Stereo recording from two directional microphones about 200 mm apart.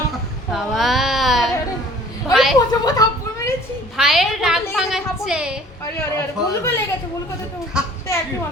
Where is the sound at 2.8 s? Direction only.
20° left (ahead or behind).